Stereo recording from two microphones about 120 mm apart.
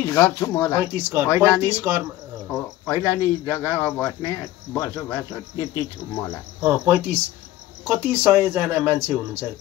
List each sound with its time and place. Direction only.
0.0 s speech: 20° left (ahead or behind)
0.9 s speech: 20° right (ahead or behind)
2.5 s speech: 20° left (ahead or behind)
6.6 s speech: 15° right (ahead or behind)